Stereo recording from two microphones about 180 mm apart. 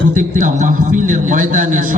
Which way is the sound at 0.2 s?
45° right (ahead or behind).